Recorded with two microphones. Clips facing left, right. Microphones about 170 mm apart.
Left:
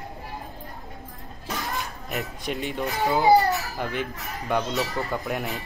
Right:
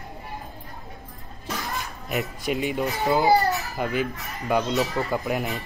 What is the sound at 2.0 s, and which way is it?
Speech, centre (ahead or behind).